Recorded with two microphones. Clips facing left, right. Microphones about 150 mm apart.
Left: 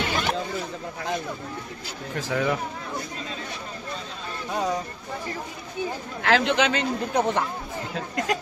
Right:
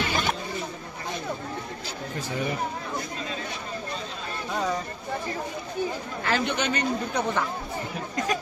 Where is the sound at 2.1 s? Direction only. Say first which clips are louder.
Left 5 dB; 90° left.